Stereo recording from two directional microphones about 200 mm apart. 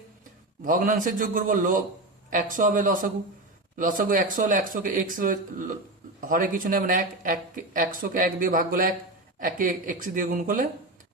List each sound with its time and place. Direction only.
0.6 s speech: 40° right (ahead or behind)